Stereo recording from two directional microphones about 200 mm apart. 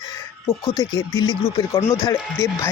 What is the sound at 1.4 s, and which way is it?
Speech, 20° left (ahead or behind).